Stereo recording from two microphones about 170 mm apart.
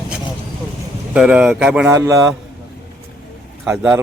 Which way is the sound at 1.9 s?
20° right (ahead or behind).